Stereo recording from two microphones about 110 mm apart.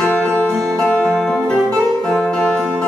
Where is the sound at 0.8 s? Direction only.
10° left (ahead or behind).